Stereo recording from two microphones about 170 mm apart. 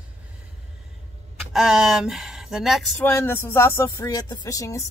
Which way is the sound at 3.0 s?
15° left (ahead or behind).